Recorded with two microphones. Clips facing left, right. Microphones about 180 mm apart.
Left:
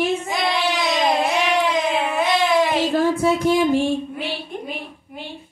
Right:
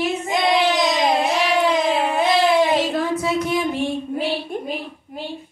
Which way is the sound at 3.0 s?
30° left (ahead or behind).